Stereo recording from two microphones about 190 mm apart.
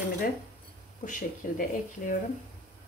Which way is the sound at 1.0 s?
45° left (ahead or behind).